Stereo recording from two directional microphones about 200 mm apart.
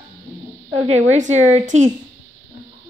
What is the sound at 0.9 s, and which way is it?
A woman's voice, 35° right (ahead or behind).